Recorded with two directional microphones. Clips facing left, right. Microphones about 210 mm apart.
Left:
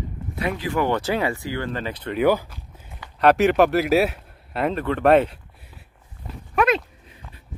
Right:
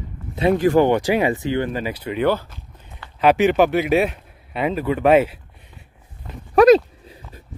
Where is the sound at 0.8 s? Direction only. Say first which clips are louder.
Right 5 dB; 15° right (ahead or behind).